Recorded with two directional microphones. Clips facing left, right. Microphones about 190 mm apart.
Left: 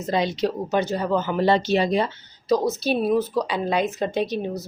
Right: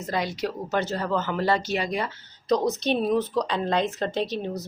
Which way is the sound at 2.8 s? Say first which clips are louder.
Left 2 dB; 5° left (ahead or behind).